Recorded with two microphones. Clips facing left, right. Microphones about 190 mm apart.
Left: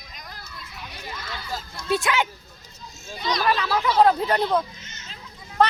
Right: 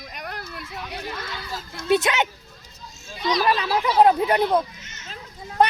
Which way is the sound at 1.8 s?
20° right (ahead or behind).